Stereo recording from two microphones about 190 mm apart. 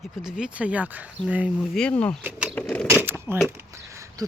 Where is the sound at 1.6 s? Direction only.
5° left (ahead or behind).